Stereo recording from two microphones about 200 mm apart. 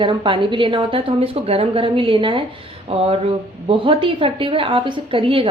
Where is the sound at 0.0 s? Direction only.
25° right (ahead or behind).